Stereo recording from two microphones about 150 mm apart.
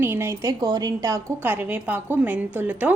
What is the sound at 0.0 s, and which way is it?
A woman's voice, 15° right (ahead or behind).